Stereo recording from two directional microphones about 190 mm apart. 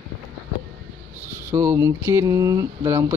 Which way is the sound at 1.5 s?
15° right (ahead or behind).